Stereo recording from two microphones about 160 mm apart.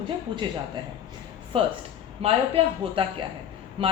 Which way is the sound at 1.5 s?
35° right (ahead or behind).